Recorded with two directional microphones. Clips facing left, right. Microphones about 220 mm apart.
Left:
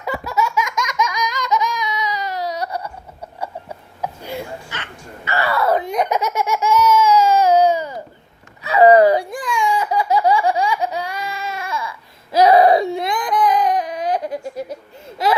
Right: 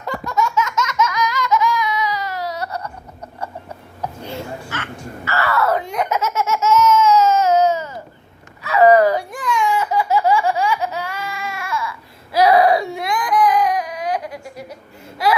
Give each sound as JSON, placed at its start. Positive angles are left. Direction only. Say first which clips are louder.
{"t": 0.0, "sound": "laughter", "louder": "even", "side_deg": 10}
{"t": 4.0, "sound": "wail", "louder": "left 1 dB", "side_deg": 15}
{"t": 5.9, "sound": "laughter", "louder": "left 2 dB", "side_deg": 15}
{"t": 8.7, "sound": "a sound", "louder": "left 2 dB", "side_deg": 30}
{"t": 9.1, "sound": "baby laughter", "louder": "left 1 dB", "side_deg": 10}
{"t": 12.3, "sound": "baby cry", "louder": "left 2 dB", "side_deg": 20}